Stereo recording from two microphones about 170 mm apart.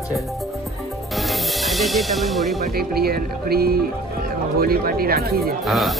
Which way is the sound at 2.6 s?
65° right (ahead or behind).